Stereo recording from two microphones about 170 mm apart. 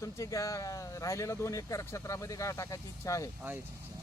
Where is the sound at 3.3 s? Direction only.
10° right (ahead or behind).